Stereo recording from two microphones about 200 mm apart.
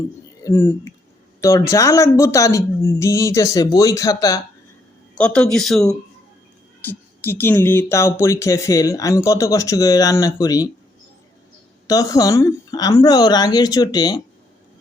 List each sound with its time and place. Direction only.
0.4 s speech: 15° left (ahead or behind)
5.1 s speech: 5° left (ahead or behind)
11.9 s speech: 15° left (ahead or behind)